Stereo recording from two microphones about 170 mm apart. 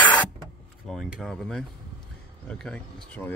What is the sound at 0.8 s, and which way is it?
Speech, centre (ahead or behind).